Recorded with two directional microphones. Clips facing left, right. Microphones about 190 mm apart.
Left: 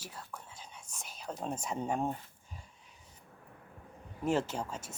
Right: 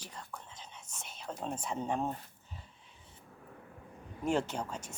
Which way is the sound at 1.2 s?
5° left (ahead or behind).